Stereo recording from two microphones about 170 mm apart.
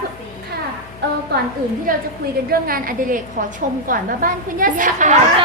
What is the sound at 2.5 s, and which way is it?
A woman's voice, 55° right (ahead or behind).